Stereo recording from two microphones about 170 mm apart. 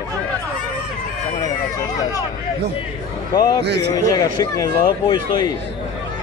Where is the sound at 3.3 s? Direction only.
20° left (ahead or behind).